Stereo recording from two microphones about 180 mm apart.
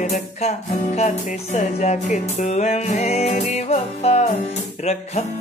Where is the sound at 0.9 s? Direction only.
40° left (ahead or behind).